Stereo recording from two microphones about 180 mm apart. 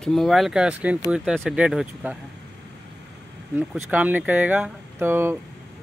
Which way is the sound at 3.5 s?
5° right (ahead or behind).